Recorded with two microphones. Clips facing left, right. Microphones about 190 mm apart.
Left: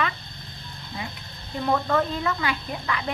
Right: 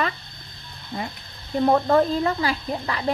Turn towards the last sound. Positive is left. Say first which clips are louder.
# right 4 dB
turn(degrees=-35)  # may be behind; listen again after turning